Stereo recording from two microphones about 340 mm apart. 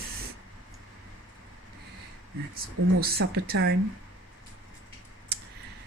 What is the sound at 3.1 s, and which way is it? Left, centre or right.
Speech, right.